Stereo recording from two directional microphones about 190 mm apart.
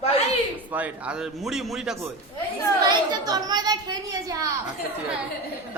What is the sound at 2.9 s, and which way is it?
A woman's voice, 20° right (ahead or behind).